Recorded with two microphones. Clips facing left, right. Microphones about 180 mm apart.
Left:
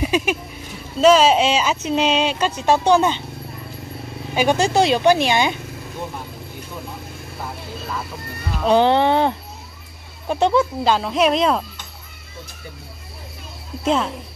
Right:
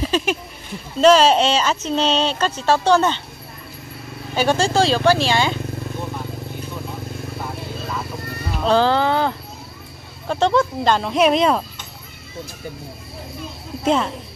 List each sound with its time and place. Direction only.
0.0 s a sound: 5° left (ahead or behind)
1.0 s speech: 5° left (ahead or behind)
4.3 s speech: 15° left (ahead or behind)
8.6 s speech: 20° left (ahead or behind)
10.2 s speech: 10° left (ahead or behind)
13.8 s speech: centre (ahead or behind)